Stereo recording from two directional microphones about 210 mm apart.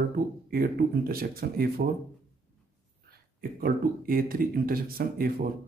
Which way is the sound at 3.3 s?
45° right (ahead or behind).